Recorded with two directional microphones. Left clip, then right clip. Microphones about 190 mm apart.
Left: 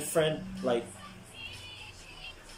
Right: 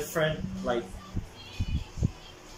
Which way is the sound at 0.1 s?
10° left (ahead or behind).